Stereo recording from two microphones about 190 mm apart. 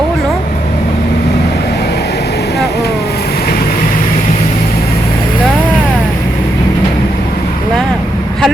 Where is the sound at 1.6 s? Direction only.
60° left (ahead or behind).